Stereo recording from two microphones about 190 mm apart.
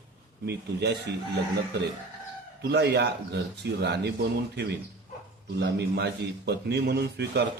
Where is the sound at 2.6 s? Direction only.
60° right (ahead or behind).